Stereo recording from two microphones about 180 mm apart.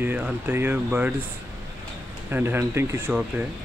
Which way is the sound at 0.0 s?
10° right (ahead or behind).